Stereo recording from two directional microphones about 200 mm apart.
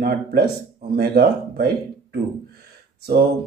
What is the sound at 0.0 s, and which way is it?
Speech, 50° right (ahead or behind).